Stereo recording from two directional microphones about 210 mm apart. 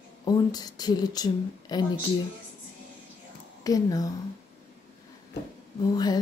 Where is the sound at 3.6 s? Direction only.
15° left (ahead or behind).